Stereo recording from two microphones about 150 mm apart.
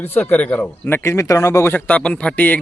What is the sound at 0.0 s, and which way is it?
Speech, 15° left (ahead or behind).